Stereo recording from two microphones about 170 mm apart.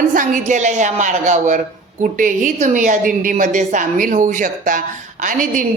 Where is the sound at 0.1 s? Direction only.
50° right (ahead or behind).